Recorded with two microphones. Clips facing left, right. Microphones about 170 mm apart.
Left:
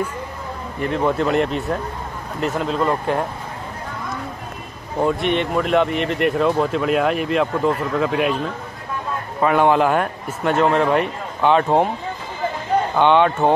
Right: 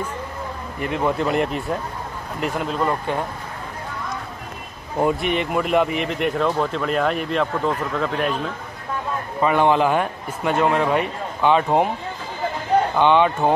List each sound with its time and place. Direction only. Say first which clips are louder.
0.9 s speech: left 2 dB; centre (ahead or behind)
5.0 s speech: left 2 dB; 5° right (ahead or behind)
9.4 s speech: left 2 dB; centre (ahead or behind)
12.9 s speech: left 4 dB; centre (ahead or behind)